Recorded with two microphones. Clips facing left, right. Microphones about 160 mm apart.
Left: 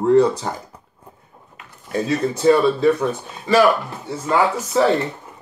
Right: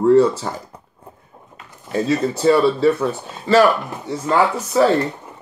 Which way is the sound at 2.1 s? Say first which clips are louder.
Even; 15° left (ahead or behind).